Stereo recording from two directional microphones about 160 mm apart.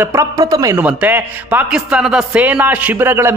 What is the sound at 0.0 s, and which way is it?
A man's voice, 15° right (ahead or behind).